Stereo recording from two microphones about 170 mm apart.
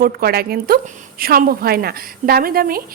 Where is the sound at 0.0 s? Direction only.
65° right (ahead or behind).